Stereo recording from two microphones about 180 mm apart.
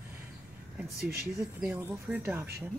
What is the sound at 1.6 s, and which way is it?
Speech, 10° right (ahead or behind).